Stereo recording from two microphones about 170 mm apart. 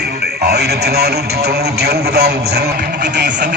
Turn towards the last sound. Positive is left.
turn(degrees=-90)